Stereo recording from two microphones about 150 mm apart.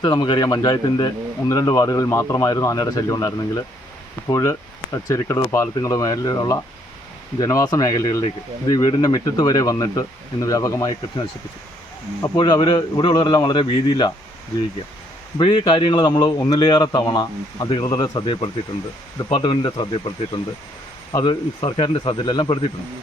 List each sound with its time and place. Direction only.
0.0 s speech: 30° left (ahead or behind)
12.2 s speech: 25° left (ahead or behind)
15.4 s speech: 35° left (ahead or behind)
21.1 s speech: 30° left (ahead or behind)